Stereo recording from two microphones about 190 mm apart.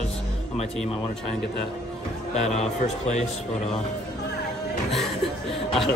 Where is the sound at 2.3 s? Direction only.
35° left (ahead or behind).